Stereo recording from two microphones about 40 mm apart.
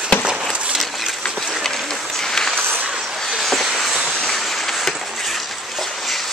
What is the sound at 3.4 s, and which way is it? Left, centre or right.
Vehicle, centre.